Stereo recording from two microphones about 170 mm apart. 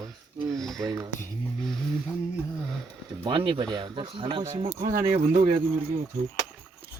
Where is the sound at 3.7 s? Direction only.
30° right (ahead or behind).